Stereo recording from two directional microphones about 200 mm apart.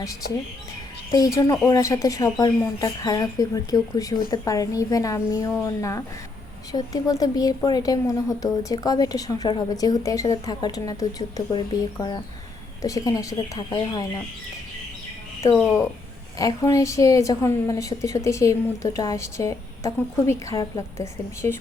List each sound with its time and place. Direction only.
0.0 s speech: 15° left (ahead or behind)
1.6 s speech: 15° left (ahead or behind)
6.7 s speech: 20° left (ahead or behind)
16.4 s speech: 15° left (ahead or behind)